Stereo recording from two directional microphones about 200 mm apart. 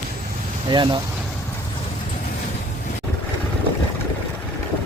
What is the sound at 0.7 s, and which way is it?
Speech, 25° right (ahead or behind).